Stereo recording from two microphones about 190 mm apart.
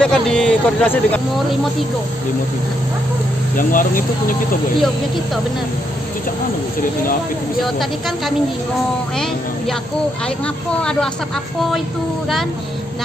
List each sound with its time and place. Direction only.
0.0 s speech: 5° left (ahead or behind)
3.5 s speech: 45° left (ahead or behind)
10.8 s speech: 5° left (ahead or behind)